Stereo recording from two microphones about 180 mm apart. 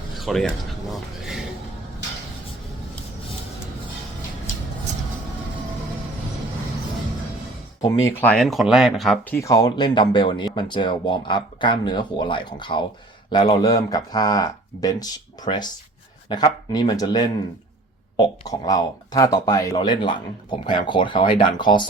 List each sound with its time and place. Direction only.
0.2 s speech: centre (ahead or behind)
7.8 s speech: 20° left (ahead or behind)